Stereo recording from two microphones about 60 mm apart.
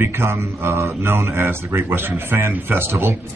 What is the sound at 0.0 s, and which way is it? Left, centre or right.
Speech, right.